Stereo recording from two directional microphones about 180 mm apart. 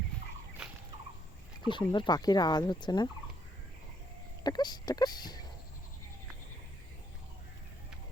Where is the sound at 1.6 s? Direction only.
25° left (ahead or behind).